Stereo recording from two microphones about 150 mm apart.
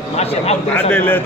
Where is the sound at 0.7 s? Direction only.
10° left (ahead or behind).